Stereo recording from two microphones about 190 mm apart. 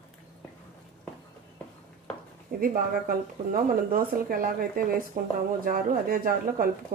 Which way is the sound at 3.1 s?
50° right (ahead or behind).